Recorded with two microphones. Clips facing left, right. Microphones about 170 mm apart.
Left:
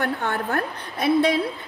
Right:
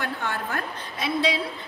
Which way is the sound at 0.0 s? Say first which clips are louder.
Left 5 dB; 55° left (ahead or behind).